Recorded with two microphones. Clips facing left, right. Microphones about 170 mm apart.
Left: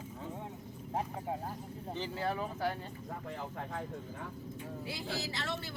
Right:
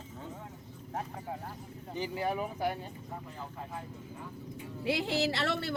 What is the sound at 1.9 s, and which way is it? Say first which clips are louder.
Speech: right 3 dB; 15° right (ahead or behind).